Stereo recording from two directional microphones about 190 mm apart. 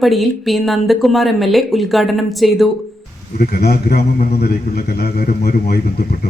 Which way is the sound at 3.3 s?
55° left (ahead or behind).